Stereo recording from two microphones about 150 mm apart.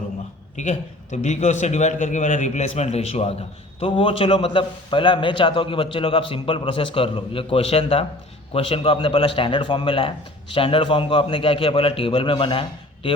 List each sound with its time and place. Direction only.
0.5 s a man's voice: 50° left (ahead or behind)